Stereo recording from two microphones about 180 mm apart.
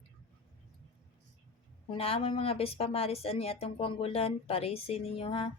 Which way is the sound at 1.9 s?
30° left (ahead or behind).